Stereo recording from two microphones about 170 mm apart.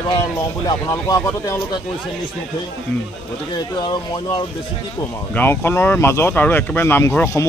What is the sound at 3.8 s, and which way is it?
Speech, 25° left (ahead or behind).